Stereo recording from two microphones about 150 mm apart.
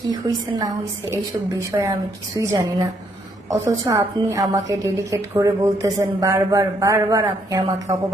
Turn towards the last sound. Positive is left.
turn(degrees=-25)  # may be behind; listen again after turning